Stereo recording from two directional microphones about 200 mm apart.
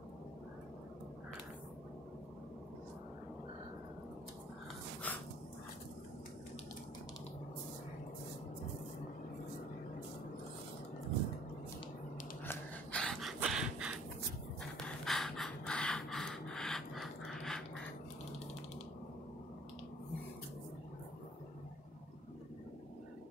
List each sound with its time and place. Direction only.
5.1 s dog: 10° left (ahead or behind)
12.4 s gasp: 5° left (ahead or behind)
14.9 s a sound: centre (ahead or behind)